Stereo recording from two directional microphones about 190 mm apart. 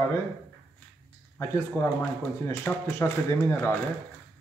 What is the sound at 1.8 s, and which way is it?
Speech, 10° left (ahead or behind).